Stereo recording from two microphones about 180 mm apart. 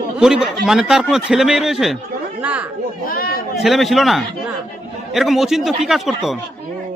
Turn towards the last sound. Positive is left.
turn(degrees=0)  # may be behind; listen again after turning